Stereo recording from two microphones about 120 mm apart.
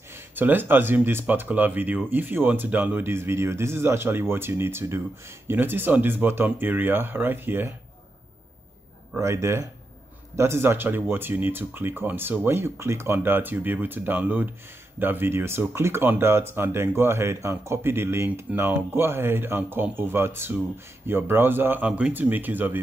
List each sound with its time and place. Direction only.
0.1 s speech: 15° right (ahead or behind)
9.2 s speech: 25° right (ahead or behind)